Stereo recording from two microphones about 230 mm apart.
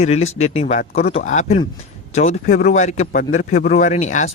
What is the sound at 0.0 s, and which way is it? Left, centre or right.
A man's voice, left.